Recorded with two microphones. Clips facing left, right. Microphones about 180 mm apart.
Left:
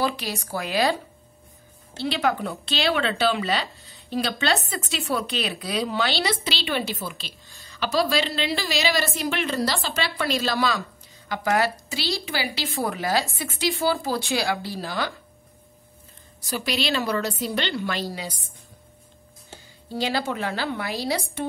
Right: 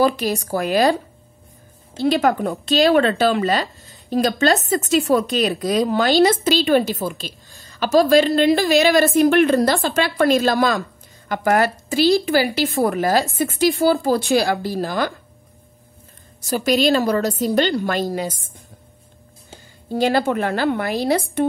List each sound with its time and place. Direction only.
0.0 s speech: 45° right (ahead or behind)
2.0 s speech: 45° right (ahead or behind)
16.3 s speech: 45° right (ahead or behind)
19.9 s speech: 50° right (ahead or behind)